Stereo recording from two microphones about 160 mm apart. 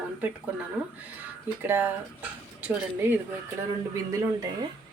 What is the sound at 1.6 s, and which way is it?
A woman's voice, 10° right (ahead or behind).